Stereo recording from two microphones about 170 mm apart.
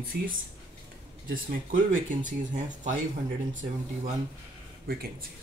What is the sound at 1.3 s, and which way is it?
Speech, 55° right (ahead or behind).